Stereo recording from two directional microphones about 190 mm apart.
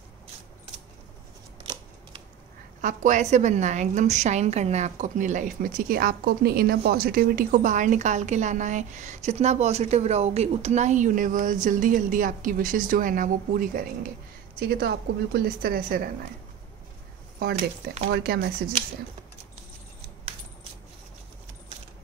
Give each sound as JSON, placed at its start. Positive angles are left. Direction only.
{"t": 2.8, "sound": "a woman's voice", "side_deg": -45}
{"t": 14.6, "sound": "a woman's voice", "side_deg": -60}
{"t": 17.4, "sound": "a woman's voice", "side_deg": -55}